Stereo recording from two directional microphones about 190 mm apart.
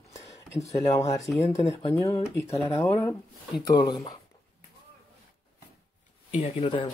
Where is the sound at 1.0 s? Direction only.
15° left (ahead or behind).